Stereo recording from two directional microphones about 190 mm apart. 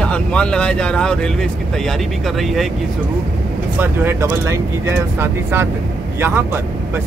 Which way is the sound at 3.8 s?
15° right (ahead or behind).